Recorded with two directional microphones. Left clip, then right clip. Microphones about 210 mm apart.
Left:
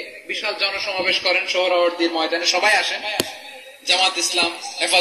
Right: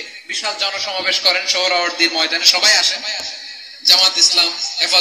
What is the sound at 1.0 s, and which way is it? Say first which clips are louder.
A man's voice: right 3 dB; 50° right (ahead or behind).